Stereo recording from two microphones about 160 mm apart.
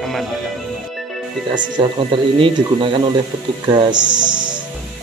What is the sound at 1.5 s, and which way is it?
Speech, 30° right (ahead or behind).